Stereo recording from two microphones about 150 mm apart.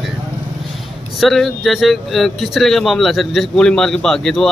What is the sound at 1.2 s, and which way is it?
Speech, centre (ahead or behind).